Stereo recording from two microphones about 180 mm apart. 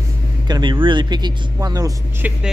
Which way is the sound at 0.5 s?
25° right (ahead or behind).